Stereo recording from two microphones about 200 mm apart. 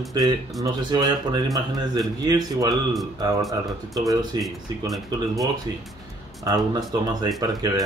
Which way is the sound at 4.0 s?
15° right (ahead or behind).